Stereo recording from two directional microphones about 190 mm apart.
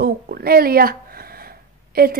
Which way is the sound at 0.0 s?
55° right (ahead or behind).